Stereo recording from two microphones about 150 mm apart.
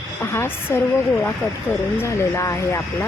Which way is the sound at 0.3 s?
15° left (ahead or behind).